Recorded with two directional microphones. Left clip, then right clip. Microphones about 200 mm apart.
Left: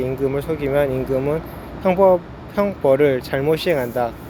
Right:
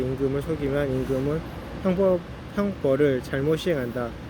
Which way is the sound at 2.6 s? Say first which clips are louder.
Left 7 dB; 15° right (ahead or behind).